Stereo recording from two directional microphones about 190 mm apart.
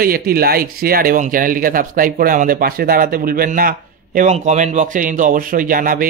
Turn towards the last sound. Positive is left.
turn(degrees=-45)  # may be behind; listen again after turning